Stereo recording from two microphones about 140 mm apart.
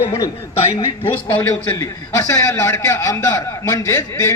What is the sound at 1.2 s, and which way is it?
A man's voice, 20° left (ahead or behind).